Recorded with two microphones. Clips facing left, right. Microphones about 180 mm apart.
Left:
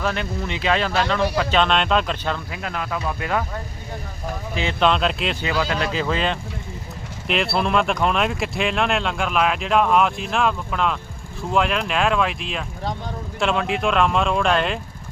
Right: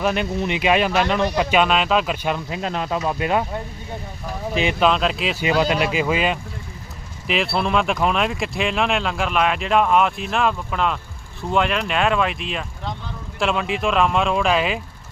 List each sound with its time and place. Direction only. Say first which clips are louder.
0.0 s speech: right 4 dB; 15° right (ahead or behind)
2.5 s speech: right 4 dB; 25° right (ahead or behind)
4.8 s speech: left 2 dB; centre (ahead or behind)
5.4 s speech: right 6 dB; 20° right (ahead or behind)